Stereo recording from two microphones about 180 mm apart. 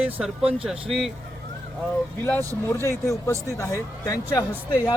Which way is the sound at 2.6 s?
15° left (ahead or behind).